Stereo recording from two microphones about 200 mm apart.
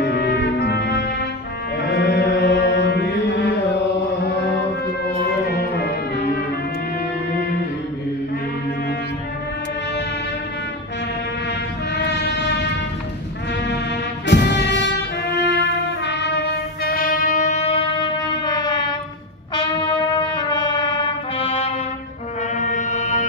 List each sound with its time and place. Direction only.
0.0 s music: 55° left (ahead or behind)
1.8 s mantra: 55° left (ahead or behind)
5.2 s music: 55° left (ahead or behind)
11.9 s a sound: 60° left (ahead or behind)
14.2 s music: 60° left (ahead or behind); by 18.9 s 20° left (ahead or behind)
19.5 s brass instrument: 25° left (ahead or behind)
22.6 s music: 40° left (ahead or behind)